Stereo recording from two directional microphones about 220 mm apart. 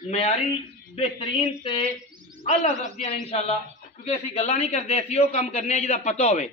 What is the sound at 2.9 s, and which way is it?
A man's voice, 25° left (ahead or behind).